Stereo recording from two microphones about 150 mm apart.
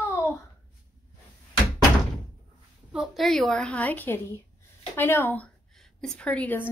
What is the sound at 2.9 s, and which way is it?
A woman's voice, centre (ahead or behind).